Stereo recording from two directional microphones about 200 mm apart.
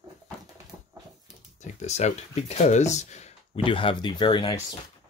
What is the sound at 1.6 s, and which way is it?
Speech, 35° left (ahead or behind).